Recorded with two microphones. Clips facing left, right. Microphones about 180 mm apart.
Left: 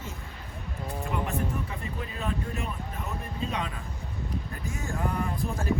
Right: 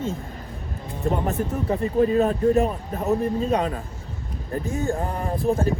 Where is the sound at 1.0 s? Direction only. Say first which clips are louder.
Right 8 dB; 40° right (ahead or behind).